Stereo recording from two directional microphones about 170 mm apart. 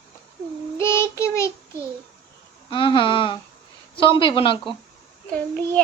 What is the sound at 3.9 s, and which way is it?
Speech, 30° left (ahead or behind).